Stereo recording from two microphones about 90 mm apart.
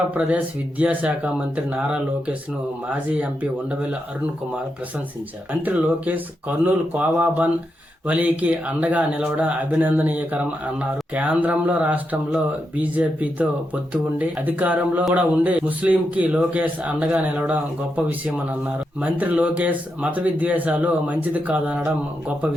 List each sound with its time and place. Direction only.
0.1 s speech: 15° right (ahead or behind)
5.6 s speech: 20° right (ahead or behind)